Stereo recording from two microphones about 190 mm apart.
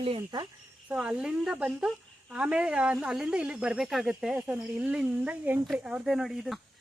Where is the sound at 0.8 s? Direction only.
5° right (ahead or behind).